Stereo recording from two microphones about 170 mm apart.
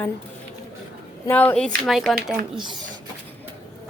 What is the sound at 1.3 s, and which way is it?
Speech, 10° left (ahead or behind).